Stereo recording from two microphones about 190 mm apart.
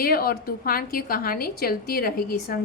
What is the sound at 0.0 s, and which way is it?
Speech, 50° left (ahead or behind).